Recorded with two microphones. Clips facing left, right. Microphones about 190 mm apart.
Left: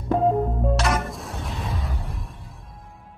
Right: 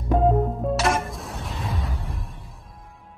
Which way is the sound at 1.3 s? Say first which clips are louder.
Even; centre (ahead or behind).